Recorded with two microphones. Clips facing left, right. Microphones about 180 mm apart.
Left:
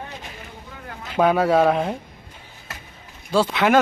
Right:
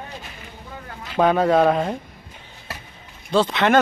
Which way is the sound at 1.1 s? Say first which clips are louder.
Even; 10° left (ahead or behind).